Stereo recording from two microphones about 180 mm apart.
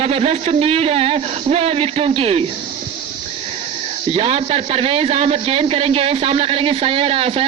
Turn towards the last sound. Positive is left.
turn(degrees=-30)  # may be behind; listen again after turning